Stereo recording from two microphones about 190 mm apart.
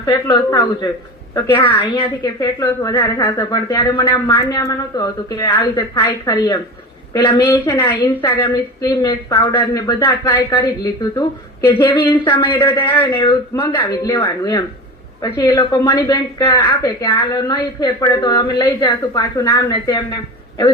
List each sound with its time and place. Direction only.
0.0 s speech: 20° left (ahead or behind)
1.4 s a woman's voice: 10° left (ahead or behind)
1.6 s a woman's voice: 25° left (ahead or behind)
12.5 s a woman's voice: 10° left (ahead or behind)
13.1 s speech: 25° left (ahead or behind)